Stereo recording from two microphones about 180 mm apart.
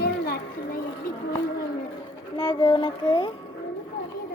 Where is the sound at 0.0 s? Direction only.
60° left (ahead or behind).